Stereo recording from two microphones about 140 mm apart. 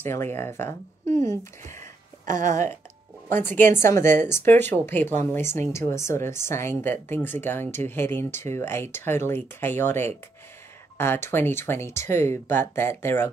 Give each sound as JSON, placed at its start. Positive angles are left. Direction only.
{"t": 0.0, "sound": "speech", "side_deg": 15}
{"t": 2.2, "sound": "a woman's voice", "side_deg": -65}
{"t": 3.3, "sound": "speech", "side_deg": 15}